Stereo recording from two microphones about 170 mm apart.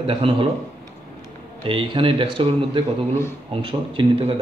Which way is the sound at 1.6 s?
30° right (ahead or behind).